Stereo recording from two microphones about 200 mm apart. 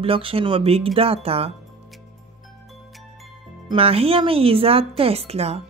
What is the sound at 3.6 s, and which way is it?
Speech, 30° right (ahead or behind).